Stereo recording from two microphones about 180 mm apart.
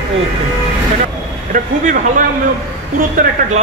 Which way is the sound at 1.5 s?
45° right (ahead or behind).